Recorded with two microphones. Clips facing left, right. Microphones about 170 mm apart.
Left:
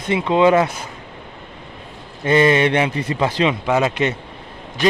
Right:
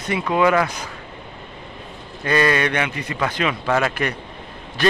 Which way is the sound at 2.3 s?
20° left (ahead or behind).